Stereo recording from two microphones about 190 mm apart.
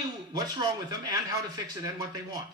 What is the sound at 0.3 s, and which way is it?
Speech, 20° right (ahead or behind).